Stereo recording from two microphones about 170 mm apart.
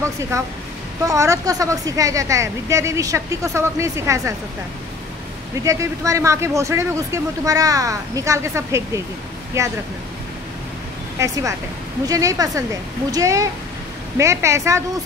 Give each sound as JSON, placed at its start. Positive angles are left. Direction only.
{"t": 0.0, "sound": "speech", "side_deg": -15}
{"t": 5.6, "sound": "speech", "side_deg": -20}
{"t": 11.1, "sound": "speech", "side_deg": -20}